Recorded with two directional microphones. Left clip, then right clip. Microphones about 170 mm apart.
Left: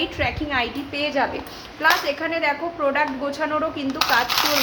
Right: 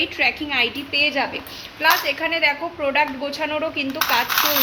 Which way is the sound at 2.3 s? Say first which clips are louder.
Right 2 dB; 20° right (ahead or behind).